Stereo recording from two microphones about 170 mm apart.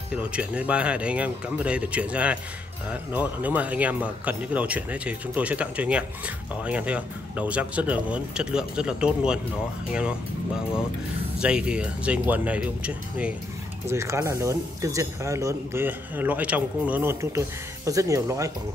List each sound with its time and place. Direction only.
0.1 s speech: 5° right (ahead or behind)